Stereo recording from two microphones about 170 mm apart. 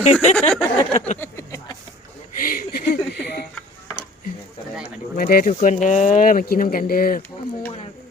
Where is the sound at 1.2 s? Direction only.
15° left (ahead or behind).